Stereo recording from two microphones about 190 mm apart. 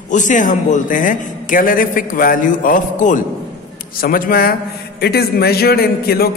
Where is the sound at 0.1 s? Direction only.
40° left (ahead or behind).